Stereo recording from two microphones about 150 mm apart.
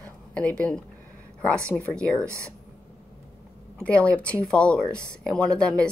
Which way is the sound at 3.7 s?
10° left (ahead or behind).